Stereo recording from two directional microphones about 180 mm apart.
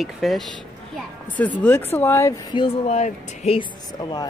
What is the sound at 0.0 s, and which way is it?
Speech, centre (ahead or behind).